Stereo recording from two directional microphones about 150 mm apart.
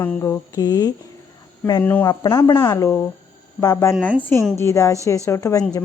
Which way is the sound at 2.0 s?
25° left (ahead or behind).